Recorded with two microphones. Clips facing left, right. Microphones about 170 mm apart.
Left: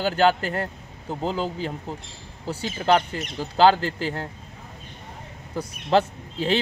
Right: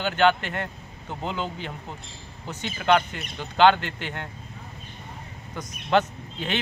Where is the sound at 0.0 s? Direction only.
35° left (ahead or behind).